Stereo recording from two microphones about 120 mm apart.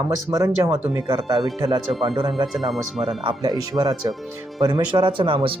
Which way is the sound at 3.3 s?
30° right (ahead or behind).